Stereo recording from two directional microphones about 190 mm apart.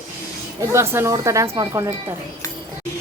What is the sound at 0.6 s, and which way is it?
Speech, 15° right (ahead or behind).